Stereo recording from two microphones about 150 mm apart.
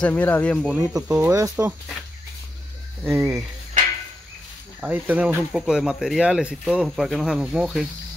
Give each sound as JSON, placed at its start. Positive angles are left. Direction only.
{"t": 0.0, "sound": "speech", "side_deg": 10}
{"t": 0.9, "sound": "speech", "side_deg": -10}
{"t": 1.3, "sound": "speech", "side_deg": -20}
{"t": 3.0, "sound": "speech", "side_deg": -15}
{"t": 4.7, "sound": "speech", "side_deg": -10}